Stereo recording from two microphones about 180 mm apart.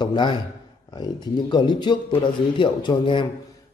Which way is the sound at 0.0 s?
25° left (ahead or behind).